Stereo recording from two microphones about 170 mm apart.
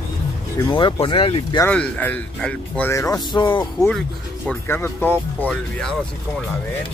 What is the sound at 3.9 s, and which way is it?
Speech, 5° left (ahead or behind).